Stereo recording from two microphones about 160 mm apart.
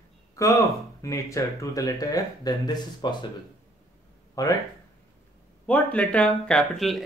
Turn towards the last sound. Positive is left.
turn(degrees=0)  # may be behind; listen again after turning